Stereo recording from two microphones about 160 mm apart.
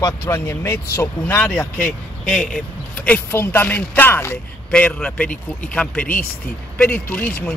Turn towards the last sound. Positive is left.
turn(degrees=10)  # may be behind; listen again after turning